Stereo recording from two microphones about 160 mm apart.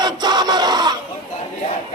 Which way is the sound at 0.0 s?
25° right (ahead or behind).